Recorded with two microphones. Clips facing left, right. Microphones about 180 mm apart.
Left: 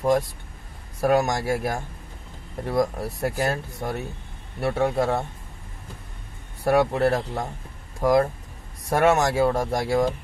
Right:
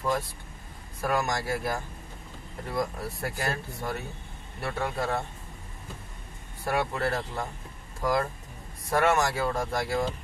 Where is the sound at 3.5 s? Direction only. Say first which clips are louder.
Left 4 dB; 60° left (ahead or behind).